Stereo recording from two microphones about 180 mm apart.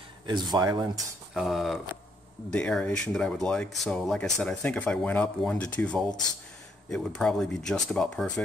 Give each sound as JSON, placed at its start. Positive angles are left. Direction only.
{"t": 0.3, "sound": "speech", "side_deg": -25}
{"t": 1.3, "sound": "speech", "side_deg": 0}